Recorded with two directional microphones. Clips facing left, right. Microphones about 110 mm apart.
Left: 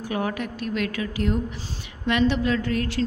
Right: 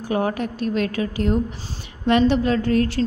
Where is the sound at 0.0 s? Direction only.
35° right (ahead or behind).